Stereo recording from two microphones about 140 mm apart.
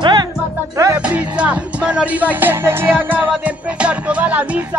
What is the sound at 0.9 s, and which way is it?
Music, 10° right (ahead or behind).